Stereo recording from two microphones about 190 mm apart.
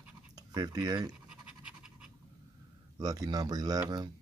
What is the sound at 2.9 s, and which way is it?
Speech, 20° right (ahead or behind).